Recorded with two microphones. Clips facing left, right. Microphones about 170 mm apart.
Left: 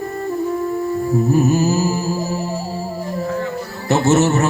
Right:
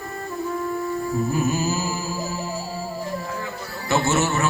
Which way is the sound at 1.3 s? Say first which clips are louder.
Left 10 dB; 40° left (ahead or behind).